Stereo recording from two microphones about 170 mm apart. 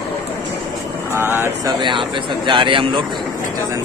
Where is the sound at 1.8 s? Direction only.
30° right (ahead or behind).